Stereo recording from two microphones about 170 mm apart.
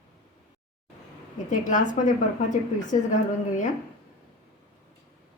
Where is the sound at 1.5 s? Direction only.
50° left (ahead or behind).